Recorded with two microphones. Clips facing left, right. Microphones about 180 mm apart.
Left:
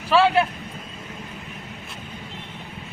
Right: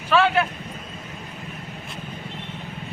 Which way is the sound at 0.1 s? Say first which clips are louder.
Left 2 dB; 30° left (ahead or behind).